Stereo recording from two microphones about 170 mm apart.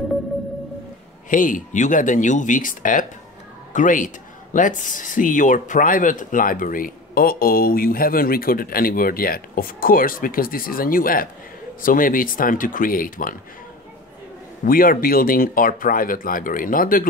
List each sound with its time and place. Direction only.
1.3 s speech: 50° left (ahead or behind)
14.6 s speech: 55° left (ahead or behind)